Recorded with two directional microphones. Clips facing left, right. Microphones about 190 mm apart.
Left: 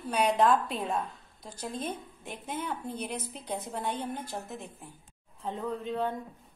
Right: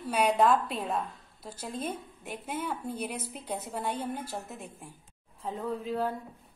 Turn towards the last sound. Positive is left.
turn(degrees=-5)  # may be behind; listen again after turning